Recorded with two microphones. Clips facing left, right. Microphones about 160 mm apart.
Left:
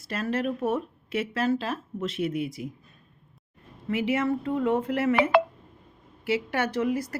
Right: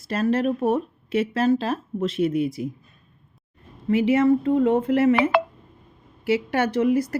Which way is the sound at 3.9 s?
30° right (ahead or behind).